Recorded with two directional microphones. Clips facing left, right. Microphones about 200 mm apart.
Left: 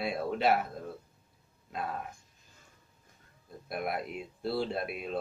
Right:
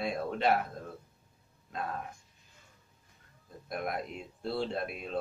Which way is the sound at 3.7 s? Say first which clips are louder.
Left 1 dB; 5° left (ahead or behind).